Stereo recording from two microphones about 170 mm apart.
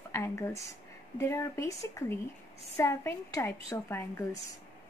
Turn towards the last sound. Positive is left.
turn(degrees=15)  # may be behind; listen again after turning